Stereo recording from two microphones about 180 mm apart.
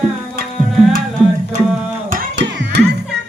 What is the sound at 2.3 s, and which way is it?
Music, 75° right (ahead or behind).